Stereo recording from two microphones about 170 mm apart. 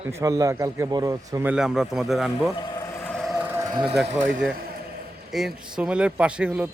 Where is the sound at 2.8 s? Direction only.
15° left (ahead or behind).